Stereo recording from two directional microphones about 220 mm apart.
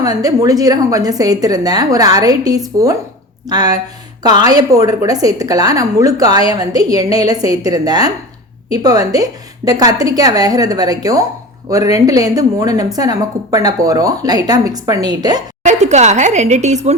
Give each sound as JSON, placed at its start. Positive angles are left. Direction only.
{"t": 0.0, "sound": "a woman's voice", "side_deg": -15}
{"t": 15.6, "sound": "a woman's voice", "side_deg": -30}